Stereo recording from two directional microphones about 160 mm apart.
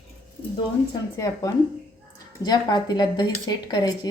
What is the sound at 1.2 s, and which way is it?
Speech, 20° left (ahead or behind).